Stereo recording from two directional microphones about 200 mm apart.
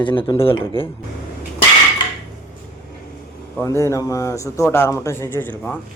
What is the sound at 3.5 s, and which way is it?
Speech, 15° left (ahead or behind).